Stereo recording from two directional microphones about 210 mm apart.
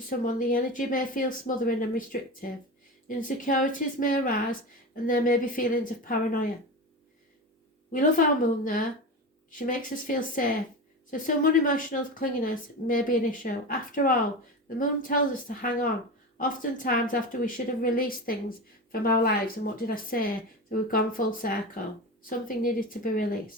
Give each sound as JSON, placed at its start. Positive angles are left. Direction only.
{"t": 0.1, "sound": "speech", "side_deg": 40}
{"t": 3.1, "sound": "speech", "side_deg": 40}
{"t": 7.9, "sound": "a woman's voice", "side_deg": 40}